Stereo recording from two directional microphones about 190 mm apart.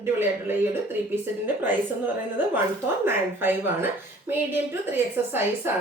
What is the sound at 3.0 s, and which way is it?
Speech, 10° right (ahead or behind).